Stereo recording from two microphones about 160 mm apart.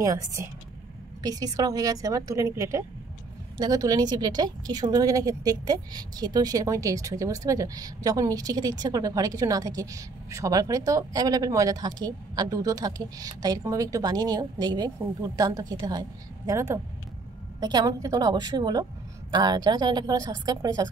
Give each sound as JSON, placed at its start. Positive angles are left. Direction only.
{"t": 0.0, "sound": "a woman's voice", "side_deg": -20}